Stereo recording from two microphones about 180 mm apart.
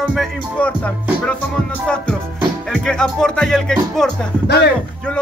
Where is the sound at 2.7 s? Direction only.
5° left (ahead or behind).